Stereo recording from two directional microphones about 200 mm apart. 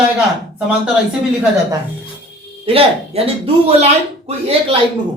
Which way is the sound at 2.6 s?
30° right (ahead or behind).